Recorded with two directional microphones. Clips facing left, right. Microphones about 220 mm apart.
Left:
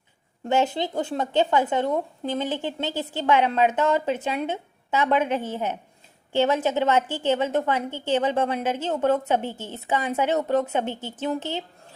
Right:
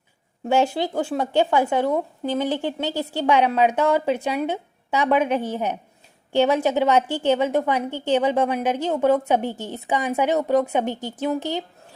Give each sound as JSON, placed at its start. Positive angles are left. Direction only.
{"t": 0.4, "sound": "speech", "side_deg": -10}